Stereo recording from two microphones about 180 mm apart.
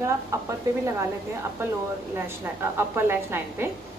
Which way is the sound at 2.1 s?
15° right (ahead or behind).